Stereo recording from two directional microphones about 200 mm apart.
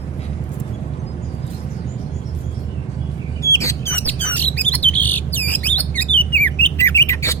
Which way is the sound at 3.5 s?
15° left (ahead or behind).